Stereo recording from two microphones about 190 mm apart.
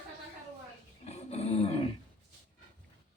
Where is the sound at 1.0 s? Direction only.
35° left (ahead or behind).